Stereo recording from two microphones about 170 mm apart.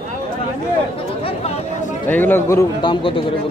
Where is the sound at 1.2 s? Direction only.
35° left (ahead or behind).